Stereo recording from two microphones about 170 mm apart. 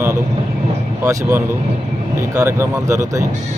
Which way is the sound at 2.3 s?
20° right (ahead or behind).